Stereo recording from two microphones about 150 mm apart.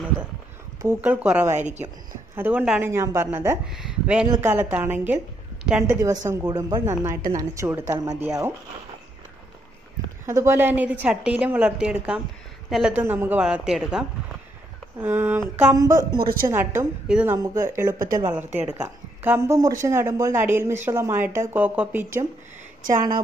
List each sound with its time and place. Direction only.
0.8 s speech: 10° right (ahead or behind)
2.9 s speech: 15° right (ahead or behind)
3.6 s speech: 5° right (ahead or behind)
4.3 s a woman's voice: 15° right (ahead or behind)
5.9 s a woman's voice: 20° right (ahead or behind)
10.2 s a woman's voice: 20° right (ahead or behind); by 13.0 s 5° right (ahead or behind)
13.0 s speech: 15° right (ahead or behind)
15.0 s a woman's voice: 15° right (ahead or behind)
16.2 s a woman's voice: 85° right
16.4 s a woman's voice: 20° right (ahead or behind)
17.9 s speech: 65° right (ahead or behind)
18.2 s speech: 15° right (ahead or behind)